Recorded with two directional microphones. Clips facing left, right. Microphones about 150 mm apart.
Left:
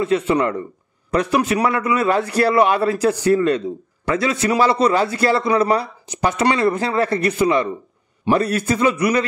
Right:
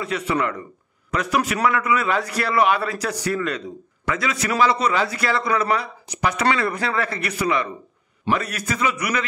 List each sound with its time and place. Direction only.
0.0 s a man's voice: 25° left (ahead or behind)